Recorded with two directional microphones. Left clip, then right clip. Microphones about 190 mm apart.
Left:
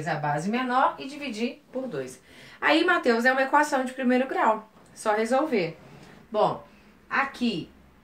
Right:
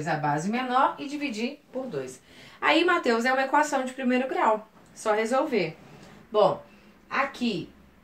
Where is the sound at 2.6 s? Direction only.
25° left (ahead or behind).